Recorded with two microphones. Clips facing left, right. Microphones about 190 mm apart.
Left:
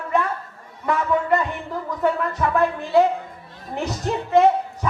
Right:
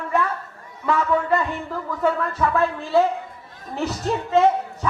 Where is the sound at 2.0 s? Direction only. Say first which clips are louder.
Even; 15° left (ahead or behind).